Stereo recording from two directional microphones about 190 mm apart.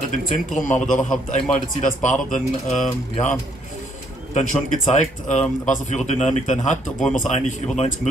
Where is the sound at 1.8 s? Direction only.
40° left (ahead or behind).